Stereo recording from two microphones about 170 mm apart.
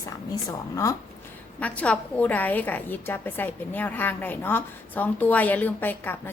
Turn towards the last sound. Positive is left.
turn(degrees=10)  # may be behind; listen again after turning